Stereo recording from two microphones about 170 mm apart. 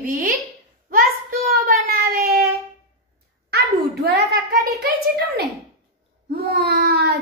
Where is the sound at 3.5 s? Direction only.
70° right (ahead or behind).